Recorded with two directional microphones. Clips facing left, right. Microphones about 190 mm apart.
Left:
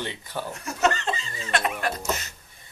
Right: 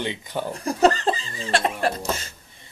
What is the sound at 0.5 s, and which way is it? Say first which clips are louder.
Speech: right 6 dB; 35° right (ahead or behind).